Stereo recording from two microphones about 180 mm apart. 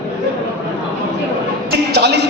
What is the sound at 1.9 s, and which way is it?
Music, 70° right (ahead or behind).